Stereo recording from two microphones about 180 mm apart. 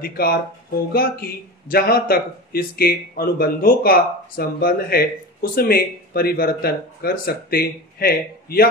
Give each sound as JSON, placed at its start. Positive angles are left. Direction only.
{"t": 0.0, "sound": "speech", "side_deg": 55}